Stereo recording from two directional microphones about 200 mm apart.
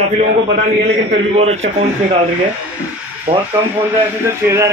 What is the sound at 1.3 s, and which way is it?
Speech, 30° right (ahead or behind).